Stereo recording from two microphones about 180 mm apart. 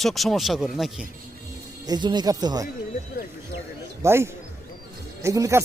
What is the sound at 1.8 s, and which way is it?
Speech, 25° right (ahead or behind).